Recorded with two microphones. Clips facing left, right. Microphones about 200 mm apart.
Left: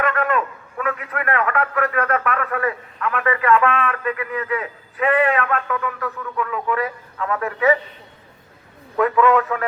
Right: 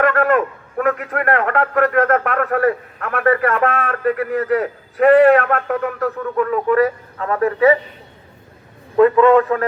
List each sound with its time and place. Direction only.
0.0 s a man's voice: 50° right (ahead or behind)
9.0 s a man's voice: 30° right (ahead or behind)